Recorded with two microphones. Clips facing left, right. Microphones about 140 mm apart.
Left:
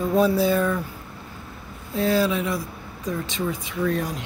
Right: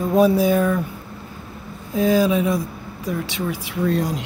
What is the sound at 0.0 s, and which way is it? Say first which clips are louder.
Speech: right 3 dB; 15° right (ahead or behind).